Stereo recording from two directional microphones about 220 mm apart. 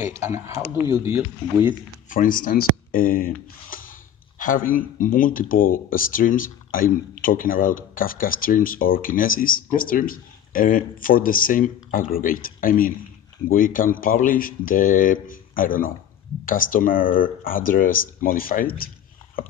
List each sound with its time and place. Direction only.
0.0 s speech: 10° right (ahead or behind)
2.0 s speech: 40° left (ahead or behind)